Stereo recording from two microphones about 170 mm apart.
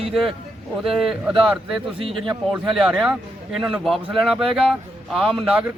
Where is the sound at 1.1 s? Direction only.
5° right (ahead or behind).